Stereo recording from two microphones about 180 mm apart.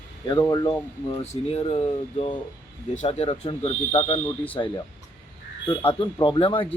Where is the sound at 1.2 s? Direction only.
35° left (ahead or behind).